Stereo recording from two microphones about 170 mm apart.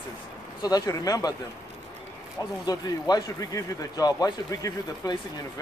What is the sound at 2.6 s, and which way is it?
Speech, 20° left (ahead or behind).